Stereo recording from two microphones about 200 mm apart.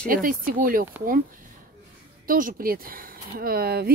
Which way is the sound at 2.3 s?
45° right (ahead or behind).